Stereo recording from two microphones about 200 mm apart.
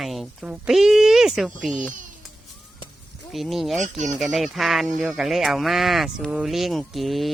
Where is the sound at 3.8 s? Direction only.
35° right (ahead or behind).